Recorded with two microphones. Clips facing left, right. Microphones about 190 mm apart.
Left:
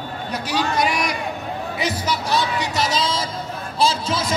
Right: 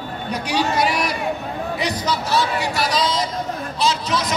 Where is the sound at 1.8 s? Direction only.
10° left (ahead or behind).